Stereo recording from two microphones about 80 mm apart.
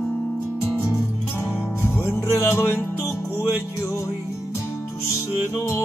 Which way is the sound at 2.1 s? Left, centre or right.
Left.